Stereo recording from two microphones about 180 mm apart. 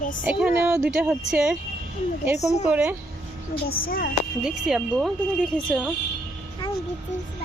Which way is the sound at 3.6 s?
55° left (ahead or behind).